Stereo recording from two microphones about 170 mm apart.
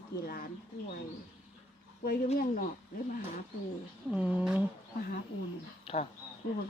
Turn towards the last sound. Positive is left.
turn(degrees=35)  # may be behind; listen again after turning